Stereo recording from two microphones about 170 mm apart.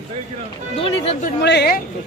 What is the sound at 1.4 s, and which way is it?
Speech, 80° left.